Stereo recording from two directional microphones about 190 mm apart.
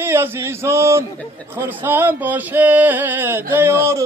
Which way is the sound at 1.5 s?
10° right (ahead or behind).